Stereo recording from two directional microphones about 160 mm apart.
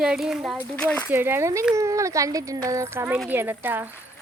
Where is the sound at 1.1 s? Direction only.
15° right (ahead or behind).